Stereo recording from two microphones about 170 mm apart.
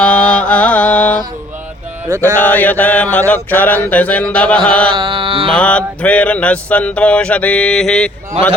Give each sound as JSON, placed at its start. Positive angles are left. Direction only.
{"t": 0.0, "sound": "music", "side_deg": 5}
{"t": 2.2, "sound": "mantra", "side_deg": 10}
{"t": 4.9, "sound": "music", "side_deg": -30}
{"t": 5.5, "sound": "mantra", "side_deg": 5}